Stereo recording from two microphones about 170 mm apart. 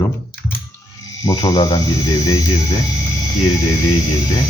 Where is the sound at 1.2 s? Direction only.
20° left (ahead or behind).